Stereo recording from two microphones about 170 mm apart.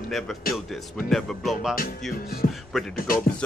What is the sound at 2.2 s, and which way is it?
Speech, 60° left (ahead or behind).